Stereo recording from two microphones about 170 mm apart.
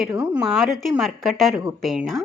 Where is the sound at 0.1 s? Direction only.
10° right (ahead or behind).